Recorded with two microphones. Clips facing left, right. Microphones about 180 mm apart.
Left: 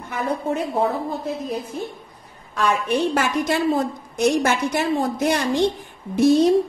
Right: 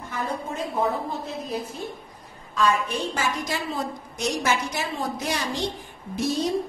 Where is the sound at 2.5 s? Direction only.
65° left (ahead or behind).